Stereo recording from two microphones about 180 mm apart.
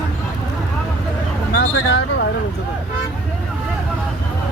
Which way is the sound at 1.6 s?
90° left.